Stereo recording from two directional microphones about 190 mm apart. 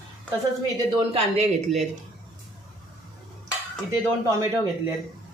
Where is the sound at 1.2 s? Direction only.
35° right (ahead or behind).